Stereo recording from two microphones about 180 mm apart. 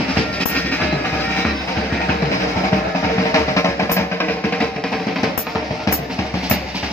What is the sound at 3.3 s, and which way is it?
Music, 15° left (ahead or behind).